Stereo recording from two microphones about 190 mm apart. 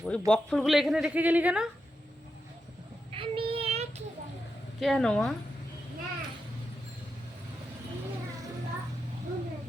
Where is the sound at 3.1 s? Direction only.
30° right (ahead or behind).